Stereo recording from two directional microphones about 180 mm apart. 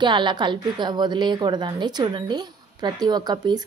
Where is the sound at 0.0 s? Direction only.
25° right (ahead or behind).